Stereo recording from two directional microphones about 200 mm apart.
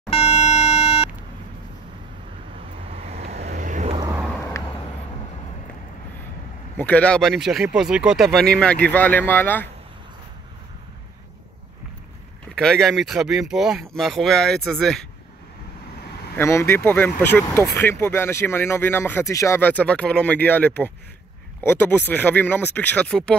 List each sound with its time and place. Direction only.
0.1 s a sound: 30° left (ahead or behind)
2.8 s vehicle: 30° right (ahead or behind)
4.4 s vehicle: 15° left (ahead or behind)
6.8 s speech: 5° left (ahead or behind)
12.5 s speech: 5° left (ahead or behind)
16.3 s speech: 15° left (ahead or behind)